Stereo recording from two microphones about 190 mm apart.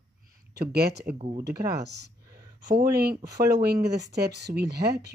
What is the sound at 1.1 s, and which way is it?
Speech, 35° right (ahead or behind).